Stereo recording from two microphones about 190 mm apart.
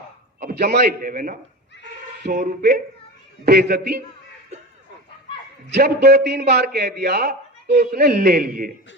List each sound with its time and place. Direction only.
0.3 s a man's voice: 55° right (ahead or behind)
5.7 s a man's voice: 55° right (ahead or behind)